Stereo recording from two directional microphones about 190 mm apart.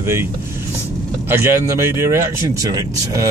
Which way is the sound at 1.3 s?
15° right (ahead or behind).